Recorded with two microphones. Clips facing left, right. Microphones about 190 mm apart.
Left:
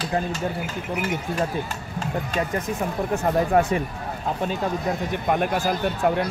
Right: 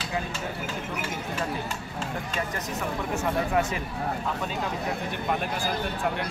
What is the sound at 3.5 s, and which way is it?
Speech, 45° left (ahead or behind).